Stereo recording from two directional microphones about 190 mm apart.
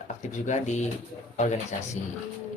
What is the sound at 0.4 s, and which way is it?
Speech, 40° left (ahead or behind).